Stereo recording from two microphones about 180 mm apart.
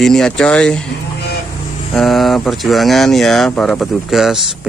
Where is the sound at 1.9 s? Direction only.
Centre (ahead or behind).